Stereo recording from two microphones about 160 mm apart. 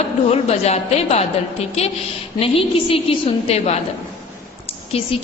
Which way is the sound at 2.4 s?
35° left (ahead or behind).